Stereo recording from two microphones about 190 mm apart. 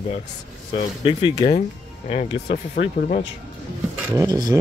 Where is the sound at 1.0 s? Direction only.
25° left (ahead or behind).